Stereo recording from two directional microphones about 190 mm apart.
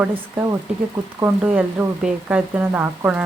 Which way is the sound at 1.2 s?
10° right (ahead or behind).